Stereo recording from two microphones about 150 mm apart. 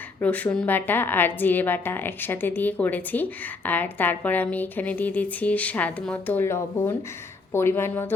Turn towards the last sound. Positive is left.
turn(degrees=15)  # may be behind; listen again after turning